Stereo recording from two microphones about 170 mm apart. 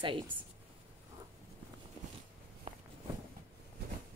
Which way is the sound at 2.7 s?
35° right (ahead or behind).